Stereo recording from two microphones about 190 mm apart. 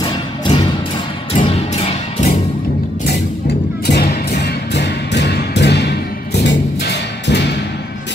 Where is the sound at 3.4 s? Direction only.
50° left (ahead or behind).